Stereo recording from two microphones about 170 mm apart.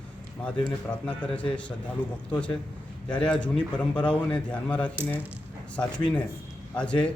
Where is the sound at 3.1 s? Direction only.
5° left (ahead or behind).